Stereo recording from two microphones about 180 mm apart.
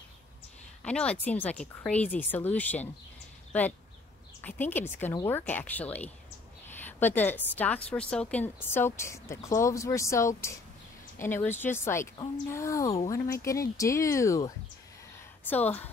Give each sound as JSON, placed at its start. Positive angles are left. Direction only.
{"t": 0.8, "sound": "a woman's voice", "side_deg": 5}